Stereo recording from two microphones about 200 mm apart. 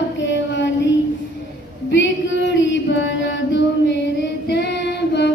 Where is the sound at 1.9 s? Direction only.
65° left (ahead or behind).